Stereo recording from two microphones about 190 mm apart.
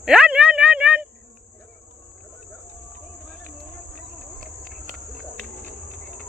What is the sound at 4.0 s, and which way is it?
Cricket, 40° right (ahead or behind).